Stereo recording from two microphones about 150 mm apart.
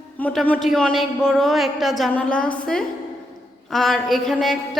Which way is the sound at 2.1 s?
10° left (ahead or behind).